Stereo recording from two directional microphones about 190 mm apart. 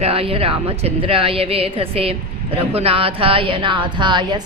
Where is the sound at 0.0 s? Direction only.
30° right (ahead or behind).